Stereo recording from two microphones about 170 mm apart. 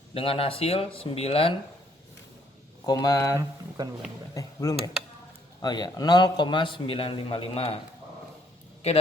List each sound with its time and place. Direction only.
0.1 s speech: 35° left (ahead or behind)
2.8 s a man's voice: 20° left (ahead or behind)
3.8 s speech: 25° right (ahead or behind)
4.4 s a man's voice: 20° left (ahead or behind)